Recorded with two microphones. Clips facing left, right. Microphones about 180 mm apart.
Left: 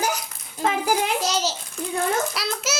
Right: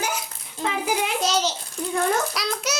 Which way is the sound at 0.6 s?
45° left (ahead or behind).